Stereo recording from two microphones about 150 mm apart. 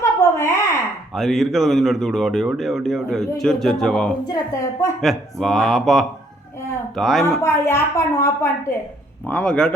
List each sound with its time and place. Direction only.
0.0 s a sound: 20° left (ahead or behind)
1.1 s speech: centre (ahead or behind)
4.3 s a woman's voice: 20° left (ahead or behind)
4.9 s speech: centre (ahead or behind)
7.4 s a woman's voice: 20° left (ahead or behind)